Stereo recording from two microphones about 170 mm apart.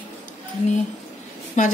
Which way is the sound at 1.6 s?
45° left (ahead or behind).